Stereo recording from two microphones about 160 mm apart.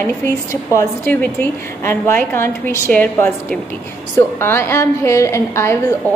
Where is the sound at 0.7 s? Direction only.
10° left (ahead or behind).